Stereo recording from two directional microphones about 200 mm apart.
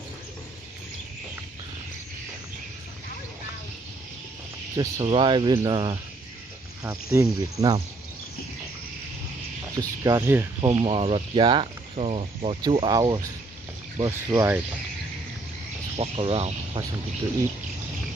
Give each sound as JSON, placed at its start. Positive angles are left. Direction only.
{"t": 4.7, "sound": "speech", "side_deg": -25}
{"t": 9.8, "sound": "speech", "side_deg": -15}
{"t": 10.7, "sound": "speech", "side_deg": -25}
{"t": 16.0, "sound": "speech", "side_deg": -30}